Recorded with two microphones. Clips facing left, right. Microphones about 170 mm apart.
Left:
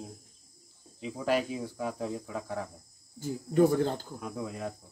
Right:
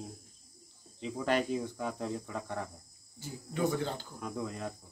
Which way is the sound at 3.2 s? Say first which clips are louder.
Left 9 dB; 45° left (ahead or behind).